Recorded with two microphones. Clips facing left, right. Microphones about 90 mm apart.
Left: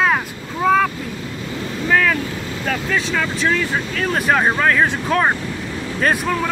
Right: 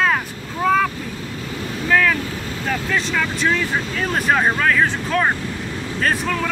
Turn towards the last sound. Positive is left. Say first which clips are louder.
# left 2 dB
turn(degrees=5)  # may be behind; listen again after turning